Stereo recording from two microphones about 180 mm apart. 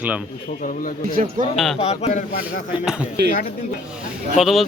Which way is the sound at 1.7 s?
35° left (ahead or behind).